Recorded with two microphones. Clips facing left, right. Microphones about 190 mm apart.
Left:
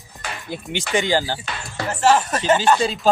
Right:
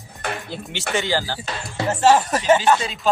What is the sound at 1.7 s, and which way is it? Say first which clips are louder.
Music: right 1 dB; 25° right (ahead or behind).